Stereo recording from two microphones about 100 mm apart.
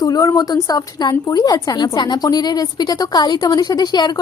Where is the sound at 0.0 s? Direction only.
40° left (ahead or behind).